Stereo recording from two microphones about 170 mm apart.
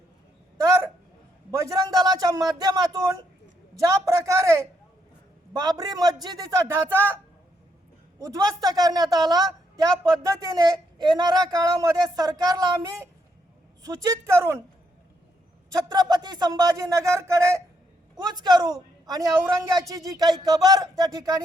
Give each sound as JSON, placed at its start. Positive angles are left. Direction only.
{"t": 1.5, "sound": "a man's voice", "side_deg": -20}
{"t": 8.2, "sound": "a woman's voice", "side_deg": -20}
{"t": 15.7, "sound": "a woman's voice", "side_deg": -25}